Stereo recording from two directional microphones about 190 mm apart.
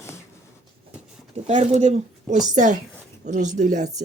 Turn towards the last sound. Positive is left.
turn(degrees=-40)  # may be behind; listen again after turning